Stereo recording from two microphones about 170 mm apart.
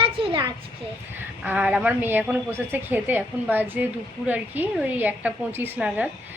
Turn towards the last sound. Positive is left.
turn(degrees=-5)  # may be behind; listen again after turning